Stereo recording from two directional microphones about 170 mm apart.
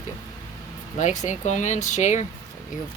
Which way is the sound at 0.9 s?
45° left (ahead or behind).